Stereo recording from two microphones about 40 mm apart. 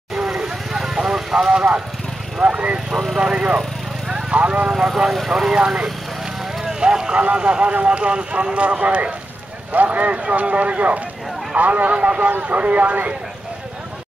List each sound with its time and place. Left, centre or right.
0.1 s vehicle: centre
2.4 s speech: right
4.1 s vehicle: right
4.7 s speech: centre
6.6 s speech: centre; by 13.1 s right